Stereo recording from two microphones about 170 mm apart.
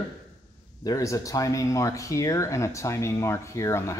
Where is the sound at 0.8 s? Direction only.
20° left (ahead or behind).